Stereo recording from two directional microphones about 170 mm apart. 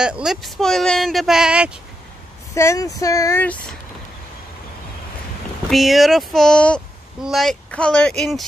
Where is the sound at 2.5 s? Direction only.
20° left (ahead or behind).